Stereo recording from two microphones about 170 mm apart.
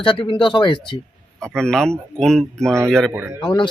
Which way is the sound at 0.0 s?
30° left (ahead or behind).